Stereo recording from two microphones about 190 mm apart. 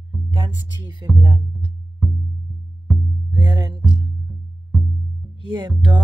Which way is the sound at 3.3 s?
20° right (ahead or behind).